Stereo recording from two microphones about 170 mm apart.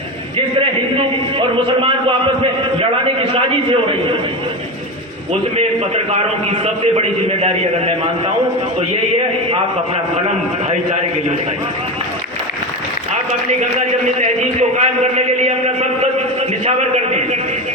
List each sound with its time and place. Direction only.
1.4 s a man's voice: 30° right (ahead or behind)
5.5 s a man's voice: 40° right (ahead or behind)
14.8 s a sound: 40° right (ahead or behind)